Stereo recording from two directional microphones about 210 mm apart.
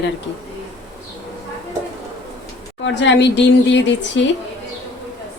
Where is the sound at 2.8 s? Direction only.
60° left (ahead or behind).